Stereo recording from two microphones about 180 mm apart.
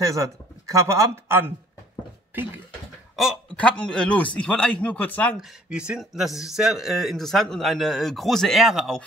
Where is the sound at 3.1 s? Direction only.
5° left (ahead or behind).